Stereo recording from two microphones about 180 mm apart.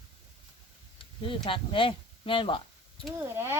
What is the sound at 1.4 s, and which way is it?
Speech, 30° left (ahead or behind).